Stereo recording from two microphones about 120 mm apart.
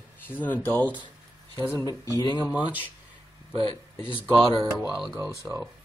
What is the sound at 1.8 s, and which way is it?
Speech, 30° left (ahead or behind).